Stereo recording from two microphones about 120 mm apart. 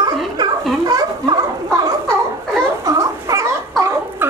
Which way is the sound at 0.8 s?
30° right (ahead or behind).